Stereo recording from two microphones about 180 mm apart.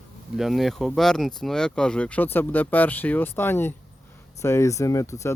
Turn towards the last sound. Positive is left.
turn(degrees=15)  # may be behind; listen again after turning